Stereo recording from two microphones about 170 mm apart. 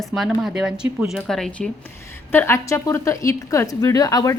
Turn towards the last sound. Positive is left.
turn(degrees=20)  # may be behind; listen again after turning